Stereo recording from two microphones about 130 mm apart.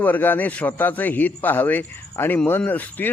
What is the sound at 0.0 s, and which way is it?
Speech, 15° left (ahead or behind).